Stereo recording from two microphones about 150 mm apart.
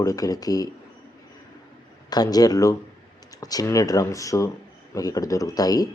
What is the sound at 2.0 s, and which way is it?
Speech, 25° left (ahead or behind).